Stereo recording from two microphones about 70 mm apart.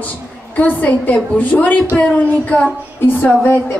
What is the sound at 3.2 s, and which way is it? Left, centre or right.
Speech, left.